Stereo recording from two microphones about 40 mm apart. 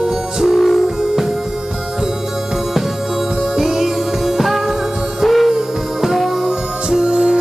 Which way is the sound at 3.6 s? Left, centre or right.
Centre.